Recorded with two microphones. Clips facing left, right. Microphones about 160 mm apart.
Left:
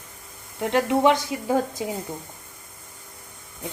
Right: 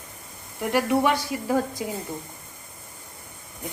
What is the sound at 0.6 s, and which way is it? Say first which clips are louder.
Speech: left 2 dB; 20° left (ahead or behind).